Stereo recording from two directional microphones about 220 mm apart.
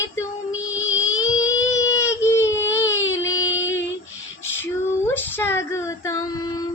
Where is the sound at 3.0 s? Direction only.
60° left (ahead or behind).